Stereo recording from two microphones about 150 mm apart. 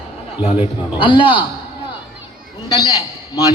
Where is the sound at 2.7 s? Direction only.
25° left (ahead or behind).